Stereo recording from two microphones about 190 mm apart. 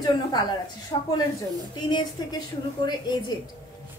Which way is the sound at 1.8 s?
25° left (ahead or behind).